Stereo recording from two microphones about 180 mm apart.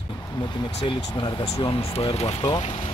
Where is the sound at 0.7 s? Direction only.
25° left (ahead or behind).